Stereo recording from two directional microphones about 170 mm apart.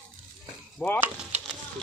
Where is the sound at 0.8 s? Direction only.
5° left (ahead or behind).